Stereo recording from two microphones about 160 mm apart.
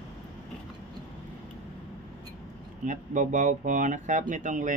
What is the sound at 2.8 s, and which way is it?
Speech, 50° right (ahead or behind).